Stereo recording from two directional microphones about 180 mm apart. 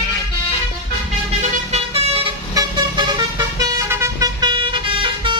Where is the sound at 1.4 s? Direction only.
35° right (ahead or behind).